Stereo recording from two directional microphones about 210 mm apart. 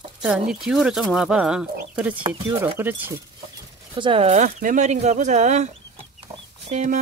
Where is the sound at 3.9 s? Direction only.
25° right (ahead or behind).